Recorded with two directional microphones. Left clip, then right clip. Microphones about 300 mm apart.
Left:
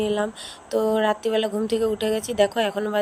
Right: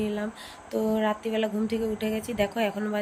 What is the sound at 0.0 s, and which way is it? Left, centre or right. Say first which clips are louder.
Speech: left 7 dB; centre.